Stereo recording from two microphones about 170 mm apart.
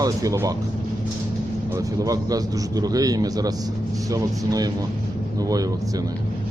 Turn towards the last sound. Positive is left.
turn(degrees=-20)  # may be behind; listen again after turning